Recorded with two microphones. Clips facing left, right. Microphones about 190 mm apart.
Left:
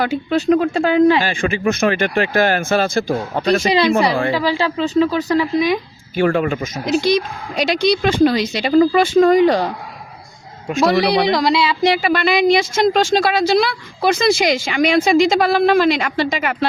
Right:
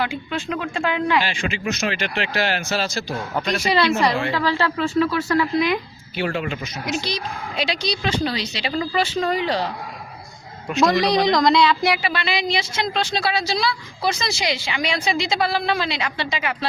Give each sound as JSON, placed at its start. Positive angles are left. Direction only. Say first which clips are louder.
{"t": 0.0, "sound": "speech", "louder": "left 8 dB", "side_deg": 40}
{"t": 1.3, "sound": "a woman's voice", "louder": "left 7 dB", "side_deg": 50}
{"t": 3.3, "sound": "speech", "louder": "left 7 dB", "side_deg": 30}
{"t": 3.7, "sound": "speech", "louder": "even", "side_deg": 15}
{"t": 6.1, "sound": "a woman's voice", "louder": "left 8 dB", "side_deg": 50}
{"t": 11.3, "sound": "speech", "louder": "even", "side_deg": 5}
{"t": 11.9, "sound": "a woman's voice", "louder": "left 8 dB", "side_deg": 50}